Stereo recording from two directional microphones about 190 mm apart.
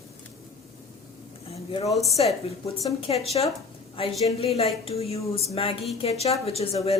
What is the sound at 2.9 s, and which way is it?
A woman's voice, 30° left (ahead or behind).